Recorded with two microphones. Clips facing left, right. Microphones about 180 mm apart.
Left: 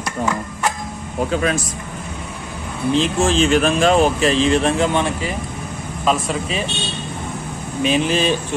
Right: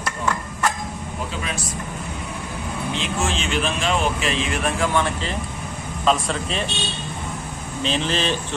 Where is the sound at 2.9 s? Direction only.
35° left (ahead or behind); by 6.6 s 5° left (ahead or behind).